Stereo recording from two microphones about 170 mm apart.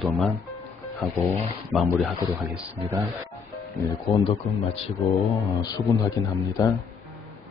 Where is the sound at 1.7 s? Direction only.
5° right (ahead or behind).